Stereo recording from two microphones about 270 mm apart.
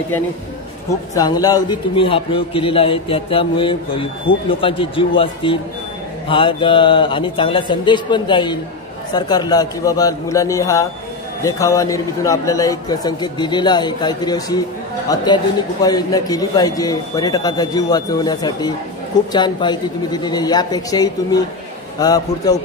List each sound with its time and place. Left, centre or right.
1.1 s a man's voice: centre